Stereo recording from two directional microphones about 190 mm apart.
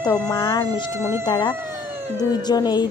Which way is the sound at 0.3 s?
25° left (ahead or behind).